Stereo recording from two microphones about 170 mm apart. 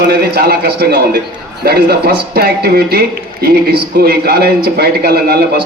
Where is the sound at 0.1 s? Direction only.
65° right (ahead or behind).